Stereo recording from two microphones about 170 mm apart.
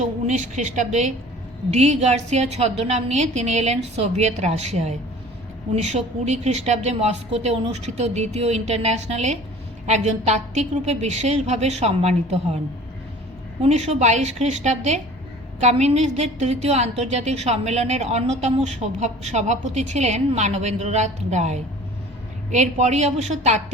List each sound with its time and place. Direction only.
0.0 s a woman's voice: 45° right (ahead or behind)
13.6 s a woman's voice: 40° right (ahead or behind)